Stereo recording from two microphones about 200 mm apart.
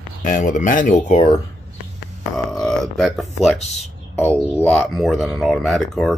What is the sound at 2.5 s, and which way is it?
Speech, centre (ahead or behind).